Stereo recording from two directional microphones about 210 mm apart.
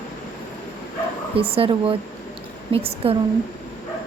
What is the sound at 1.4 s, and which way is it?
Speech, 25° right (ahead or behind).